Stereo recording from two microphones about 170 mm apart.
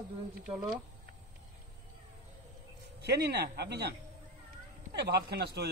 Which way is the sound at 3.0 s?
70° right (ahead or behind).